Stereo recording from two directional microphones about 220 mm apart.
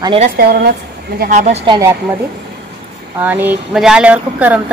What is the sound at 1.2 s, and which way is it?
Speech, 35° right (ahead or behind).